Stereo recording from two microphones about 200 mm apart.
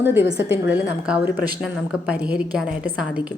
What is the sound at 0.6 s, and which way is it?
A woman's voice, 10° right (ahead or behind).